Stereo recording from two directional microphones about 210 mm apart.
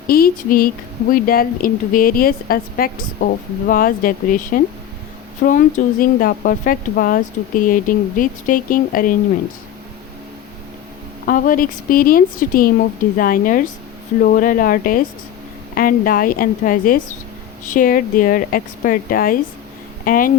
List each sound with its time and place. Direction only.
0.1 s a sound: 45° left (ahead or behind)
1.1 s speech: 45° left (ahead or behind)
11.3 s speech: 40° left (ahead or behind)